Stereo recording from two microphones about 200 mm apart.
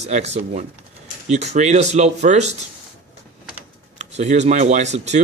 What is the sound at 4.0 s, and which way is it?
A man's voice, 35° right (ahead or behind).